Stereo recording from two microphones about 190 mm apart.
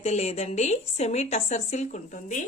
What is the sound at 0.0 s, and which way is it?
A woman's voice, 35° left (ahead or behind).